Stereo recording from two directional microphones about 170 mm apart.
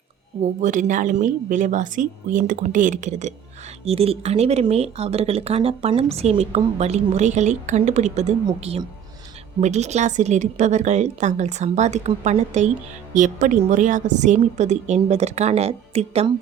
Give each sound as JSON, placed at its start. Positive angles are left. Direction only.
{"t": 0.6, "sound": "a woman's voice", "side_deg": -45}
{"t": 8.4, "sound": "speech", "side_deg": -30}
{"t": 9.6, "sound": "a woman's voice", "side_deg": -40}